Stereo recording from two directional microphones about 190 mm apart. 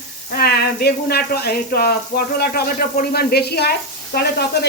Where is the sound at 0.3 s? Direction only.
55° left (ahead or behind).